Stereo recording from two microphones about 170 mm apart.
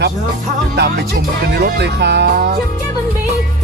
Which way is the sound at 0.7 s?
75° right (ahead or behind).